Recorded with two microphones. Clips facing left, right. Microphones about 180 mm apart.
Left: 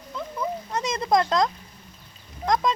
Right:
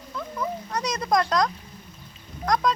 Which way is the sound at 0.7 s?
25° left (ahead or behind).